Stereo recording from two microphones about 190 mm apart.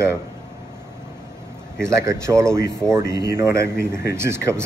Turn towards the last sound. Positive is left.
turn(degrees=-15)  # may be behind; listen again after turning